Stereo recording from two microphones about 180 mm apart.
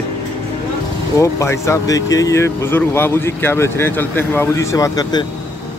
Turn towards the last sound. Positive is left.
turn(degrees=20)  # may be behind; listen again after turning